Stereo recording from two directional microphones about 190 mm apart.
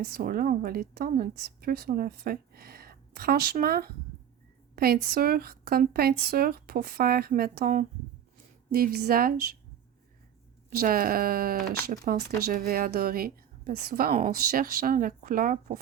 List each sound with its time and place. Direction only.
0.0 s a woman's voice: 50° right (ahead or behind)
4.7 s a sound: 55° right (ahead or behind)
5.0 s a woman's voice: 55° right (ahead or behind)
10.7 s a woman's voice: 50° right (ahead or behind)
14.1 s speech: 35° right (ahead or behind)
14.5 s a woman's voice: 50° right (ahead or behind)